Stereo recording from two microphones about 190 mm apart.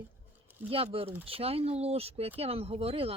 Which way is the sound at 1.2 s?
30° right (ahead or behind).